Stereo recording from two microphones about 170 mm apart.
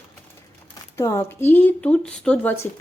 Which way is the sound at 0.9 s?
15° left (ahead or behind).